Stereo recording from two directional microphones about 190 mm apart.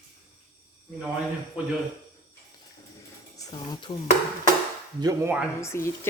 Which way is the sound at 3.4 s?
25° left (ahead or behind).